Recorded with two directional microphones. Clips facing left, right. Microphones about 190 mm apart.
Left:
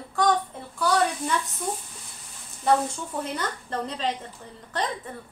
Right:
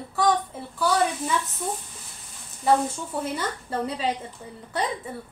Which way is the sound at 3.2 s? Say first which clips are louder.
Right 2 dB; 10° right (ahead or behind).